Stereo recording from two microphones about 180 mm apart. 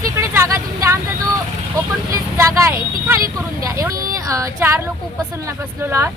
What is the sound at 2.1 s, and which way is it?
Speech, 15° right (ahead or behind).